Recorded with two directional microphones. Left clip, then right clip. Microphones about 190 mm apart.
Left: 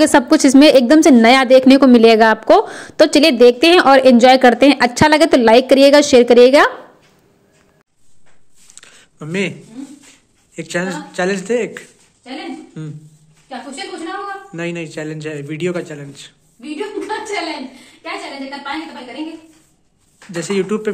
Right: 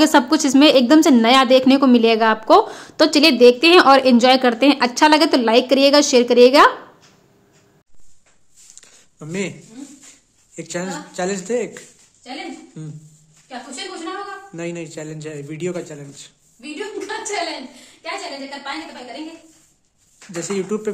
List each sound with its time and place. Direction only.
0.0 s a woman's voice: 20° left (ahead or behind)
8.7 s a sound: 10° right (ahead or behind)
10.5 s a man's voice: 10° right (ahead or behind)
14.5 s a man's voice: 10° right (ahead or behind)
20.2 s a man's voice: 10° right (ahead or behind)